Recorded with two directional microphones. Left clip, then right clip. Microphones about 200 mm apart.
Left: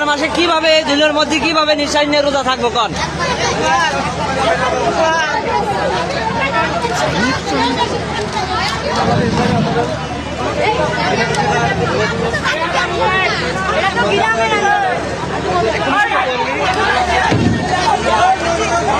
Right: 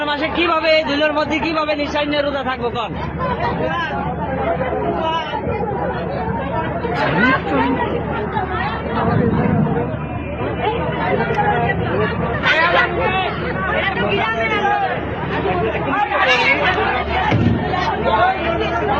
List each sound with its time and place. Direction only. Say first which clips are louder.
0.3 s a man's voice: left 2 dB; 45° left (ahead or behind)